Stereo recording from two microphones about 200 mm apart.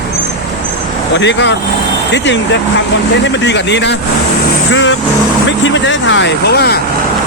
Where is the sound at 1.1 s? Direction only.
60° left (ahead or behind).